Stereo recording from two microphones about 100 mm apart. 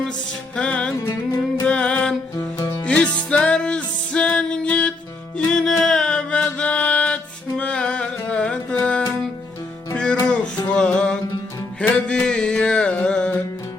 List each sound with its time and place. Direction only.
0.5 s music: 10° left (ahead or behind)
1.0 s music: 25° left (ahead or behind)
1.6 s music: 10° left (ahead or behind)
2.3 s music: 35° left (ahead or behind)
2.8 s music: 10° left (ahead or behind)
10.8 s music: 10° left (ahead or behind)